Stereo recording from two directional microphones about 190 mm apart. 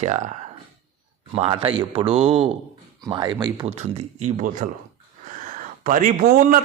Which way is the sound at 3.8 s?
35° right (ahead or behind).